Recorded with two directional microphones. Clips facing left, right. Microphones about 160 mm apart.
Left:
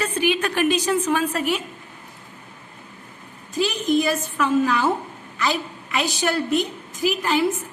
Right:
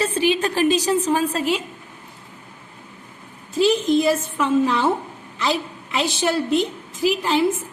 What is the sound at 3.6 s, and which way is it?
A woman's voice, 25° right (ahead or behind).